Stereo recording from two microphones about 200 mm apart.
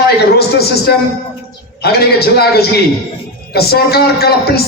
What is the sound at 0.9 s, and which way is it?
Speech, 50° left (ahead or behind).